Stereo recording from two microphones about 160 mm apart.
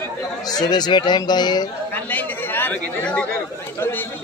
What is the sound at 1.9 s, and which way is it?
Chatter, 10° left (ahead or behind).